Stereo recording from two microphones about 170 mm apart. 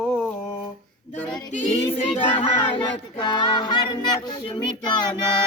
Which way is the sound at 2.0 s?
30° left (ahead or behind).